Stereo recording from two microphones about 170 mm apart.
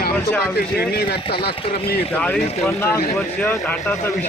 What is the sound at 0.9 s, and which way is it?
Speech, 70° left (ahead or behind).